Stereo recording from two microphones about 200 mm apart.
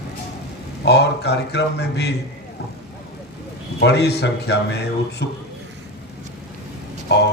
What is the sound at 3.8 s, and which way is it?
A man's voice, 55° left (ahead or behind).